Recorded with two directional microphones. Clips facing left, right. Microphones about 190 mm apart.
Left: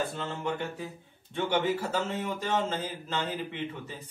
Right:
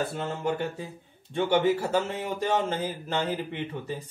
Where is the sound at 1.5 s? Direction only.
15° right (ahead or behind).